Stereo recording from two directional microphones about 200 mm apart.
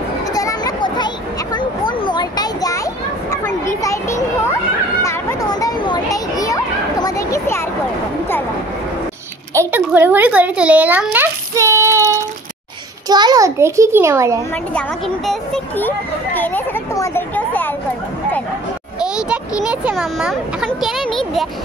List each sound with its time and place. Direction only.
0.3 s a sound: 15° left (ahead or behind)
5.0 s children playing: 20° left (ahead or behind)
9.5 s speech: 10° right (ahead or behind)
13.1 s a child's voice: 20° right (ahead or behind)
14.7 s a child's voice: 5° left (ahead or behind)
18.9 s speech: 5° right (ahead or behind)